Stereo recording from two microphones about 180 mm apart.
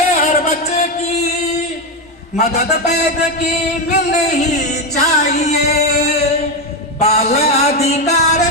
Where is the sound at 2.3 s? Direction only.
40° left (ahead or behind).